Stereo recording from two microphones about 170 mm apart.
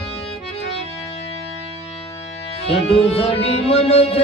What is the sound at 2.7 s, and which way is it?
Music, 35° left (ahead or behind).